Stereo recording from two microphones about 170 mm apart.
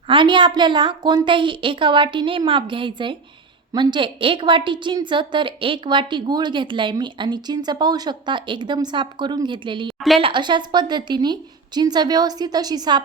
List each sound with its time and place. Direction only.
0.1 s a woman's voice: 30° right (ahead or behind)